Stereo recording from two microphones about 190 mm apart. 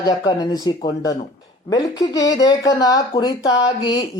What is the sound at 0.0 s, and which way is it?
Speech, 20° left (ahead or behind).